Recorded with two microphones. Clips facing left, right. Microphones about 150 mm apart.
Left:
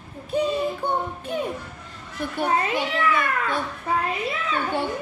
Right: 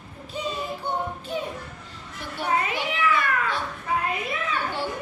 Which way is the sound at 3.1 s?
50° left (ahead or behind).